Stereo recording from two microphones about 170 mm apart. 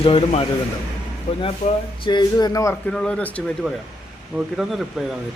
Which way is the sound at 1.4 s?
30° left (ahead or behind).